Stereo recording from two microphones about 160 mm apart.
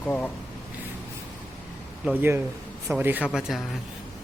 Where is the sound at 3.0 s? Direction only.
10° right (ahead or behind).